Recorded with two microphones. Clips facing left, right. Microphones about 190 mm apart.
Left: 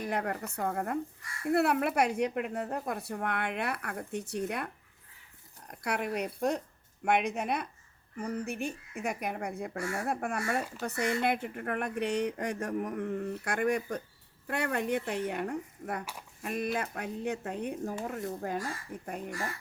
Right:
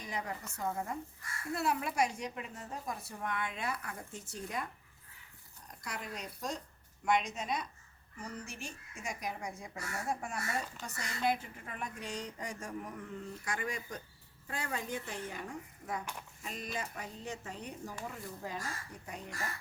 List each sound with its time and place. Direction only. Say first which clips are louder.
0.0 s speech: left 8 dB; 60° left (ahead or behind)